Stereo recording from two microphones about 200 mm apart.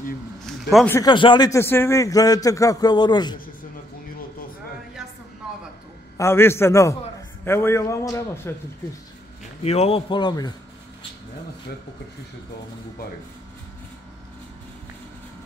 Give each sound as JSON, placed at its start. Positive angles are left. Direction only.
{"t": 0.5, "sound": "a sound", "side_deg": 0}
{"t": 0.8, "sound": "a man's voice", "side_deg": 15}
{"t": 6.1, "sound": "a man's voice", "side_deg": 10}
{"t": 9.6, "sound": "a man's voice", "side_deg": 30}